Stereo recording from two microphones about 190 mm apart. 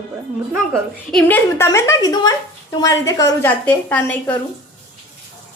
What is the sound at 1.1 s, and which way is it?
A woman's voice, 5° left (ahead or behind).